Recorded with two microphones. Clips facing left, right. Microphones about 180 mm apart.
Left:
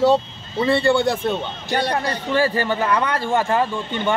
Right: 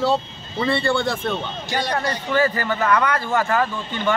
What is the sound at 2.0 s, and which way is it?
Speech, 30° left (ahead or behind).